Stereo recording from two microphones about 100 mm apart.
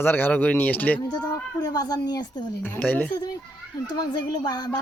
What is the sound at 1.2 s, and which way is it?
Speech, 45° left (ahead or behind).